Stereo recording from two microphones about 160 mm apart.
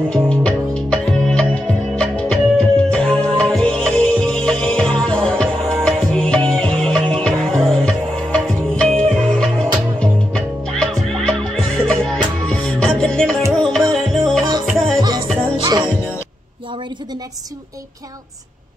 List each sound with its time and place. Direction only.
0.1 s music: 5° left (ahead or behind)
15.0 s music: 25° right (ahead or behind)